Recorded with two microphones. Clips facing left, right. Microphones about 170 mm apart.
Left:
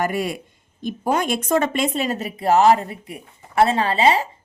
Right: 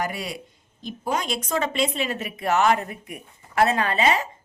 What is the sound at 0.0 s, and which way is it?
Speech, 50° left (ahead or behind).